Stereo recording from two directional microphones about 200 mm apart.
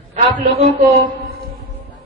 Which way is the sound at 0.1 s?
35° right (ahead or behind).